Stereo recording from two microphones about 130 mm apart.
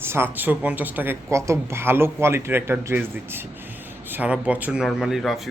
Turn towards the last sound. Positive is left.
turn(degrees=0)  # may be behind; listen again after turning